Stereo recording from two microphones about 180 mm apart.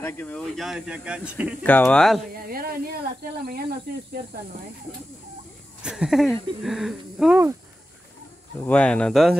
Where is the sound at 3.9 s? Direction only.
60° right (ahead or behind).